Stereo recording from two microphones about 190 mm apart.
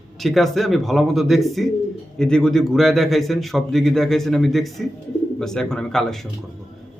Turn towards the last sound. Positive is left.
turn(degrees=5)  # may be behind; listen again after turning